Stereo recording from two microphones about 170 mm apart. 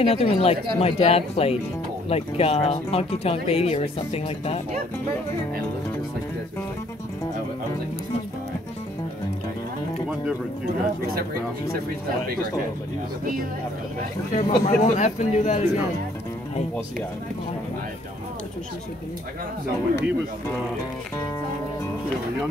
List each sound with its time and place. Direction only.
0.0 s speech: 35° left (ahead or behind)
14.3 s a man's voice: 50° left (ahead or behind)